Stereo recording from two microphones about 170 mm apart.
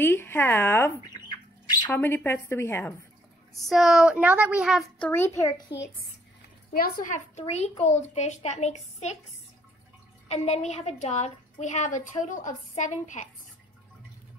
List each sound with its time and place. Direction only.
0.0 s a woman's voice: 15° left (ahead or behind)
1.1 s squawk: 25° left (ahead or behind)
1.9 s a woman's voice: 10° left (ahead or behind)
3.5 s a woman's voice: centre (ahead or behind)
5.7 s a child's voice: 85° left
6.7 s a woman's voice: 60° left (ahead or behind)
7.3 s a woman's voice: 40° left (ahead or behind)
10.2 s a woman's voice: 40° left (ahead or behind)